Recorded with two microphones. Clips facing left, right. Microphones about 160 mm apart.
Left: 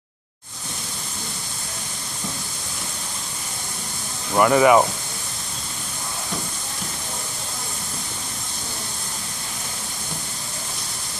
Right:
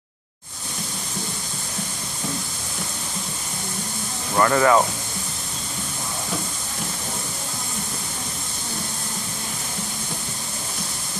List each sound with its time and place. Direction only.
4.4 s speech: 10° left (ahead or behind)